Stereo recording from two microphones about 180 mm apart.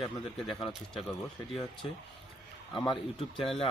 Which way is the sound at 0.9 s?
Centre (ahead or behind).